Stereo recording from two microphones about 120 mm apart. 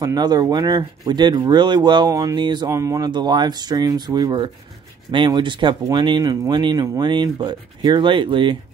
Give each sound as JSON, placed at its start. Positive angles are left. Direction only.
{"t": 0.0, "sound": "speech", "side_deg": -35}
{"t": 2.7, "sound": "speech", "side_deg": -25}
{"t": 3.1, "sound": "speech", "side_deg": -40}